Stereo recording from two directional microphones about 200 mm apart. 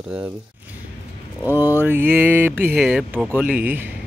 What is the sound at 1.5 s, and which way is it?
Speech, 10° right (ahead or behind).